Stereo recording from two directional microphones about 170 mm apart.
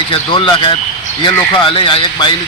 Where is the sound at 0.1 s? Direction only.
25° left (ahead or behind).